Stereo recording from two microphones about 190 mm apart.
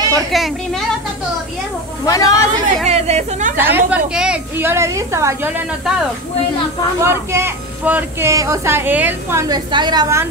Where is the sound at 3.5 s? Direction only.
10° right (ahead or behind).